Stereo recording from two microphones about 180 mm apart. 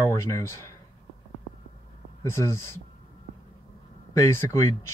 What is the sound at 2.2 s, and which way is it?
Speech, 15° left (ahead or behind).